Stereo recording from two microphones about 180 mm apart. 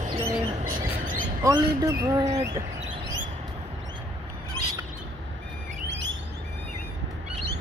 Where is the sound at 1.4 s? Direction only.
20° right (ahead or behind).